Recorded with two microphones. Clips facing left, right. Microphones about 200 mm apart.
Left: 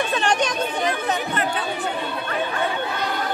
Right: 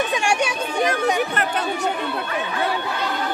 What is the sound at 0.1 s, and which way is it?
Speech, 10° right (ahead or behind).